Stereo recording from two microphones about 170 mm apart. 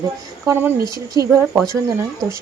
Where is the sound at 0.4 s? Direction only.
15° right (ahead or behind).